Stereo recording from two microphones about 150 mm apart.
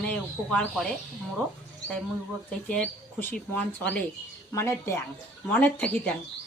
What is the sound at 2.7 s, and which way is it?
Speech, 10° left (ahead or behind).